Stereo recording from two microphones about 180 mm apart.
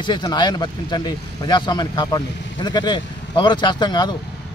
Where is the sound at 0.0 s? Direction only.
25° left (ahead or behind).